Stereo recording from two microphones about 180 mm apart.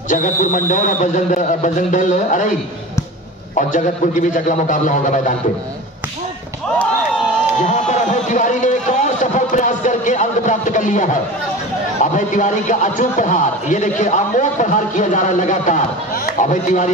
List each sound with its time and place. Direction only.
0.1 s a man's voice: 45° left (ahead or behind)
3.5 s a man's voice: 45° left (ahead or behind)
7.6 s a sound: 45° left (ahead or behind)
12.0 s a man's voice: 45° left (ahead or behind)